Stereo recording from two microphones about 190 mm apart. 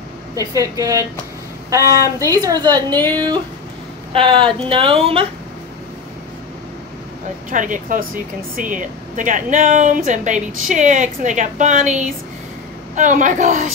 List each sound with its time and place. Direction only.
0.3 s a woman's voice: 15° right (ahead or behind)
4.1 s speech: 25° right (ahead or behind)
7.5 s speech: 45° right (ahead or behind)